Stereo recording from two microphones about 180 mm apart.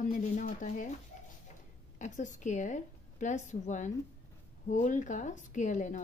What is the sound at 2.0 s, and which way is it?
A woman's voice, 45° left (ahead or behind).